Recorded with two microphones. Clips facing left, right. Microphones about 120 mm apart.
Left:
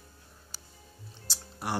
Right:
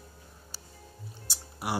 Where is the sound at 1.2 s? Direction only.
10° right (ahead or behind).